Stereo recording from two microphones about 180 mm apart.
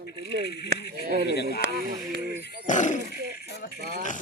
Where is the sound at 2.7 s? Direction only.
45° left (ahead or behind).